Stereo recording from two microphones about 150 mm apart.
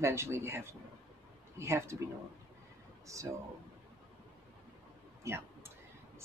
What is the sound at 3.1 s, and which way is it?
Speech, 20° right (ahead or behind).